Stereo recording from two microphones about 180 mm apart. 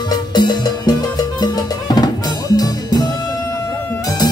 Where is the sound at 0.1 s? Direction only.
25° left (ahead or behind).